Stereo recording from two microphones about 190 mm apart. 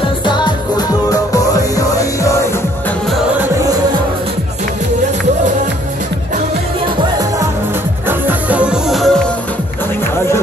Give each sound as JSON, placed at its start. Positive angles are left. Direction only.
{"t": 1.1, "sound": "music", "side_deg": 15}
{"t": 8.3, "sound": "music", "side_deg": -5}